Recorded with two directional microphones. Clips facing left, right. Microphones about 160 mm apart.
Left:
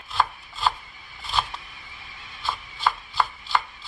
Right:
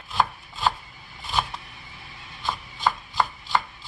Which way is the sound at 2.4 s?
15° right (ahead or behind).